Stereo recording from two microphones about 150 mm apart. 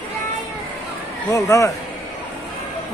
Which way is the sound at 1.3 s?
20° left (ahead or behind).